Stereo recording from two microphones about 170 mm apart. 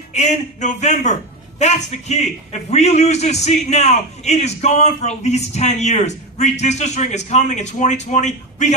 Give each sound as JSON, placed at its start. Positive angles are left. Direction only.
{"t": 0.1, "sound": "a man's voice", "side_deg": 40}